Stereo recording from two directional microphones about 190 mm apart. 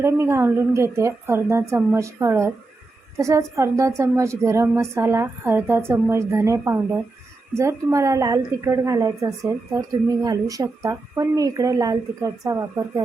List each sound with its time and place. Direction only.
0.0 s a woman's voice: 15° right (ahead or behind)